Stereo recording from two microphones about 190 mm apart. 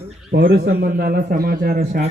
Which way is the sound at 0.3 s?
60° right (ahead or behind).